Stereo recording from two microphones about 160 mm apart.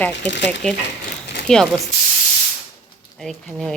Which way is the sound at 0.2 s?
90° left.